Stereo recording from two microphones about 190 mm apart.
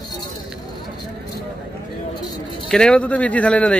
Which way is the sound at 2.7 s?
5° left (ahead or behind).